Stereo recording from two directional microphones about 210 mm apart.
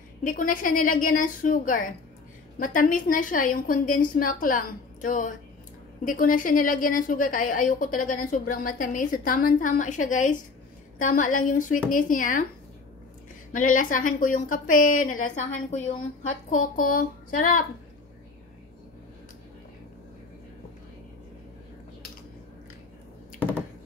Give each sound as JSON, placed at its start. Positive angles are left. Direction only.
{"t": 0.2, "sound": "a woman's voice", "side_deg": 40}
{"t": 13.5, "sound": "a woman's voice", "side_deg": 40}